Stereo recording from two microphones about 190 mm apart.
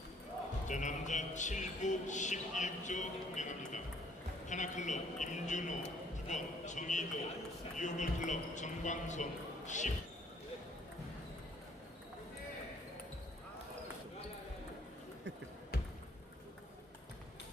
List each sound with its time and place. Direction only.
0.7 s speech: 40° left (ahead or behind)